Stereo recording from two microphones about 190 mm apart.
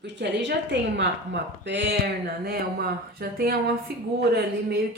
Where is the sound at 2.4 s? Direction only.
55° right (ahead or behind).